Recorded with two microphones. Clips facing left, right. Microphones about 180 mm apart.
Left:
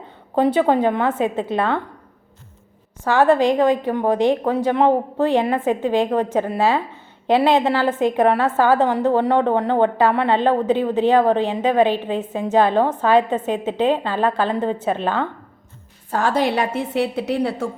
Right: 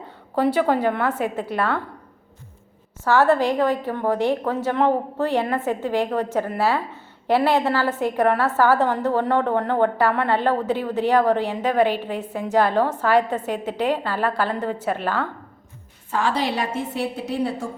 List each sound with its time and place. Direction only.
0.3 s a woman's voice: 20° left (ahead or behind)
3.0 s a woman's voice: 15° left (ahead or behind)
16.1 s a woman's voice: 45° left (ahead or behind); by 17.7 s 70° left (ahead or behind)